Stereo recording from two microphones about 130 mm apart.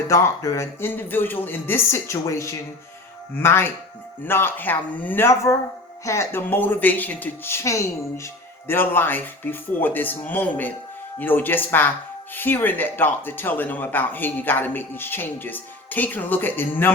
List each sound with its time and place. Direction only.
0.1 s speech: 25° left (ahead or behind)